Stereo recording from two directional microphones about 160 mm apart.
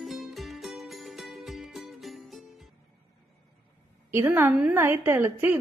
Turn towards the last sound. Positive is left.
turn(degrees=-15)  # may be behind; listen again after turning